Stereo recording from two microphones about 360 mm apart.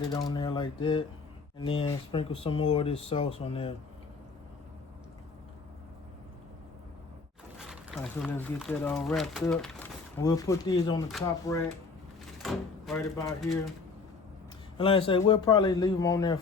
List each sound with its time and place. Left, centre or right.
0.1 s a man's voice: centre
7.6 s a man's voice: centre
14.8 s a man's voice: centre